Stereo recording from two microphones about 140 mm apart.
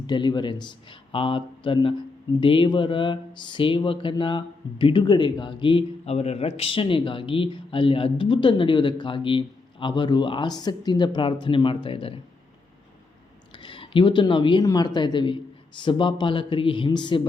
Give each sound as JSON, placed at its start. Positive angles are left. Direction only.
{"t": 0.1, "sound": "speech", "side_deg": 30}
{"t": 13.6, "sound": "speech", "side_deg": 40}